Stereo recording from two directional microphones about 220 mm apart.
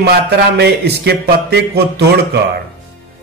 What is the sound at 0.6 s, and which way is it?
Speech, 50° right (ahead or behind).